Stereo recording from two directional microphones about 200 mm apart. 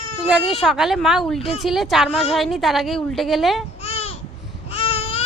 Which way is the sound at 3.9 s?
30° left (ahead or behind).